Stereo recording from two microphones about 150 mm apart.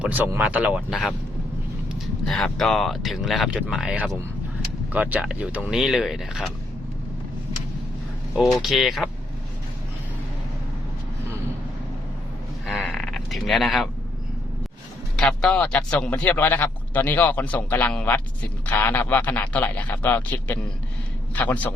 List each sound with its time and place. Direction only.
0.0 s speech: 10° right (ahead or behind)
2.2 s speech: centre (ahead or behind)
8.5 s speech: centre (ahead or behind)
12.7 s a sound: 5° left (ahead or behind)
15.1 s speech: 5° left (ahead or behind)